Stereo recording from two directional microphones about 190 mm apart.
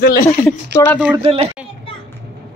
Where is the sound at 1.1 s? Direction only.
30° right (ahead or behind).